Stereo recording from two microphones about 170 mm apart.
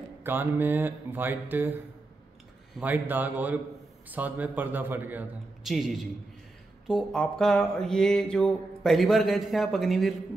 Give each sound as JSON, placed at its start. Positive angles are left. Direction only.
{"t": 0.2, "sound": "a man's voice", "side_deg": -10}
{"t": 2.8, "sound": "a man's voice", "side_deg": -10}
{"t": 6.9, "sound": "mantra", "side_deg": 0}